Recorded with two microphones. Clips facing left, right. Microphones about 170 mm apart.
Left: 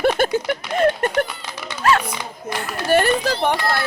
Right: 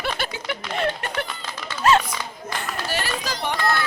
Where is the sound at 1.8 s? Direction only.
20° right (ahead or behind).